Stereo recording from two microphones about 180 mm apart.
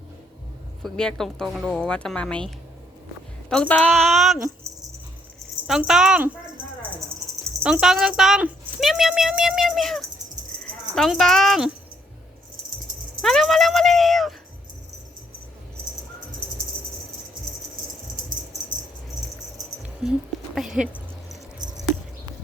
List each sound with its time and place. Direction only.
0.8 s speech: centre (ahead or behind)
3.5 s speech: 5° left (ahead or behind)
4.7 s dog: 15° right (ahead or behind)
5.6 s speech: centre (ahead or behind)
7.6 s speech: 5° right (ahead or behind)
13.2 s speech: centre (ahead or behind)
20.0 s speech: 5° right (ahead or behind)
20.6 s rodents: 5° right (ahead or behind)